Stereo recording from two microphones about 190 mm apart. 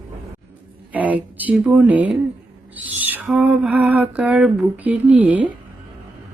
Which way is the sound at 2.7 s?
10° right (ahead or behind).